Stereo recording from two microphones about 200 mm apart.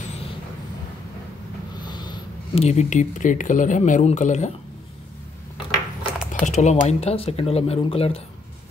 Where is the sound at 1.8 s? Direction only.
20° left (ahead or behind).